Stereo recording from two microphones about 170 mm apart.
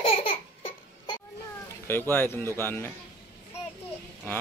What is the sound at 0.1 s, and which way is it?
Laughter, 35° left (ahead or behind).